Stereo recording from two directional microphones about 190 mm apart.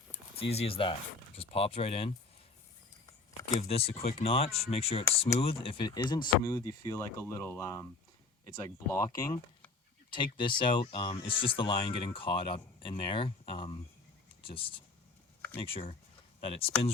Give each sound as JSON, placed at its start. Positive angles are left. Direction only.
{"t": 0.5, "sound": "speech", "side_deg": 30}
{"t": 3.4, "sound": "speech", "side_deg": 30}